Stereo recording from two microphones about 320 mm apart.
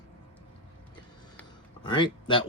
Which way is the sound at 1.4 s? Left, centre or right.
Centre.